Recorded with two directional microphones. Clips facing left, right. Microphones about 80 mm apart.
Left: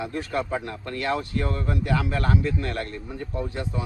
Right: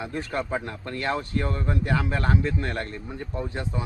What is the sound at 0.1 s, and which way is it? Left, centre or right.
A man's voice, right.